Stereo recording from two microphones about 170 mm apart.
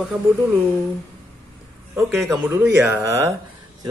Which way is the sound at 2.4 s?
5° right (ahead or behind).